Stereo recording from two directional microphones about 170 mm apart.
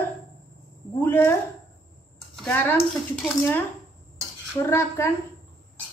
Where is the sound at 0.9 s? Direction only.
10° left (ahead or behind).